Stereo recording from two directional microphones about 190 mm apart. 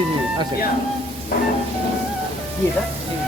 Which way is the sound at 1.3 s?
50° left (ahead or behind).